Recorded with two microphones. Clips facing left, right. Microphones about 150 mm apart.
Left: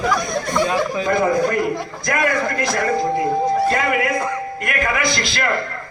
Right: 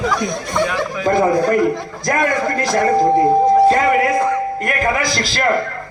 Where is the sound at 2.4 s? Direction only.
35° right (ahead or behind).